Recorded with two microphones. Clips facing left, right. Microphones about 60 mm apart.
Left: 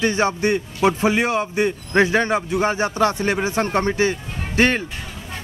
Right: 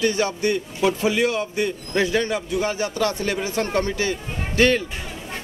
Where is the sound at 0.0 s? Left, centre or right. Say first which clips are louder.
Left 2 dB; left.